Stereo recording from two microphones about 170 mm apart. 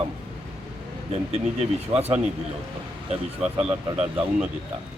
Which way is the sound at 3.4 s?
5° right (ahead or behind).